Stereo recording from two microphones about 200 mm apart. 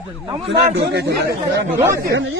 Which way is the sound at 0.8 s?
60° right (ahead or behind).